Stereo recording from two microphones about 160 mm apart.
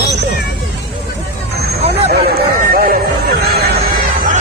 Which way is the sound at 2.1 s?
75° right (ahead or behind).